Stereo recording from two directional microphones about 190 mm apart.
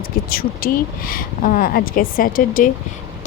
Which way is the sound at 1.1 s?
45° left (ahead or behind).